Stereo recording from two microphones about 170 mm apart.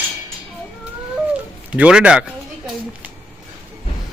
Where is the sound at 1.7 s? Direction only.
5° right (ahead or behind).